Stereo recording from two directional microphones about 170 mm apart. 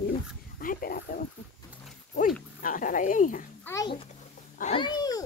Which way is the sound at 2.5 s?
55° left (ahead or behind).